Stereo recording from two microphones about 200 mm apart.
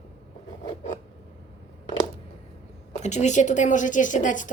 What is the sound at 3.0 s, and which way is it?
A woman's voice, 35° left (ahead or behind).